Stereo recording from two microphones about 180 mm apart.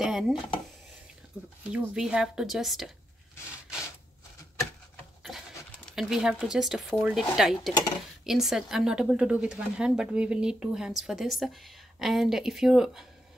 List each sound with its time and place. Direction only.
0.0 s stir: centre (ahead or behind)
1.3 s speech: 5° left (ahead or behind)
5.9 s speech: centre (ahead or behind)